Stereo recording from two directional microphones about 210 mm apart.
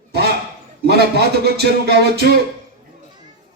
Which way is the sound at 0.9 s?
50° right (ahead or behind).